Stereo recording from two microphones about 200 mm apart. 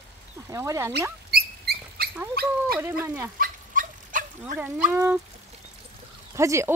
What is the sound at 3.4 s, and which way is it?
Dog, 45° right (ahead or behind).